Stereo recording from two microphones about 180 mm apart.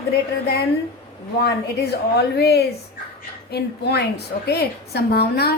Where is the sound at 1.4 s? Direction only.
65° left (ahead or behind).